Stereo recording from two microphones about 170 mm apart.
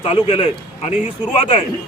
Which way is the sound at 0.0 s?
35° left (ahead or behind).